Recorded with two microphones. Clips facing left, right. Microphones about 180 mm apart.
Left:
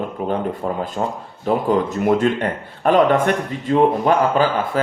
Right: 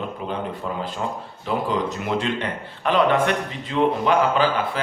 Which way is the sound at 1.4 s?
50° left (ahead or behind).